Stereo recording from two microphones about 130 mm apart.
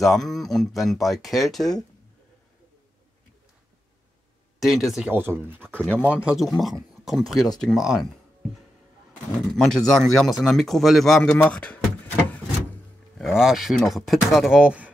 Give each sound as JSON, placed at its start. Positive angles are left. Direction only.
{"t": 0.0, "sound": "a man's voice", "side_deg": 0}
{"t": 4.6, "sound": "a man's voice", "side_deg": 0}
{"t": 5.1, "sound": "speech", "side_deg": -15}
{"t": 5.7, "sound": "speech", "side_deg": 10}
{"t": 6.2, "sound": "a man's voice", "side_deg": 0}
{"t": 13.2, "sound": "a man's voice", "side_deg": -5}